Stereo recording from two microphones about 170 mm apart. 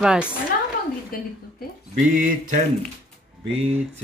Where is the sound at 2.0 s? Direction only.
50° right (ahead or behind).